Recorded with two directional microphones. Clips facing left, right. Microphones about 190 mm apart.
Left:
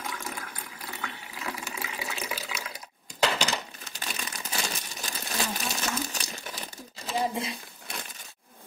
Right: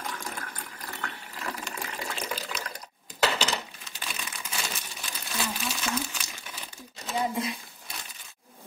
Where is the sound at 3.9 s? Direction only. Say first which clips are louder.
Left 3 dB; 40° left (ahead or behind).